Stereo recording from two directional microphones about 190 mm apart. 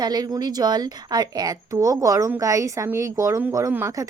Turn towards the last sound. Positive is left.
turn(degrees=-15)  # may be behind; listen again after turning